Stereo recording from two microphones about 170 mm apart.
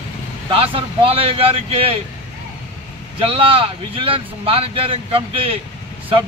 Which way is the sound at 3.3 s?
35° right (ahead or behind).